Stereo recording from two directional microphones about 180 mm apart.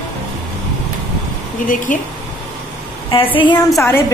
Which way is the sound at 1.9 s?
45° left (ahead or behind).